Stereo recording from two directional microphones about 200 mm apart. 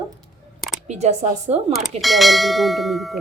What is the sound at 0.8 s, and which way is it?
Speech, 35° right (ahead or behind).